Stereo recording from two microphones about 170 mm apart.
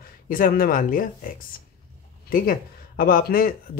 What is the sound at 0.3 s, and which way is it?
Speech, 55° left (ahead or behind).